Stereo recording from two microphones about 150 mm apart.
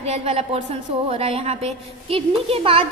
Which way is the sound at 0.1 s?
45° right (ahead or behind).